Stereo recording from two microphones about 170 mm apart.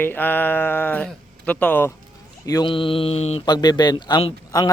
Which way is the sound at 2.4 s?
25° left (ahead or behind).